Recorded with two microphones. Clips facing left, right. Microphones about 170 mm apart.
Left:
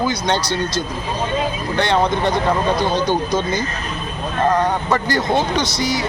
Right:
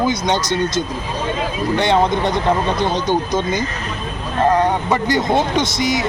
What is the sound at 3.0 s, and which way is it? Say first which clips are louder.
Speech: right 1 dB; 20° right (ahead or behind).